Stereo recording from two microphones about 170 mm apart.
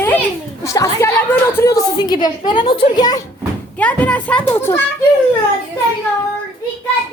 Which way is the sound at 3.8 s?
10° left (ahead or behind).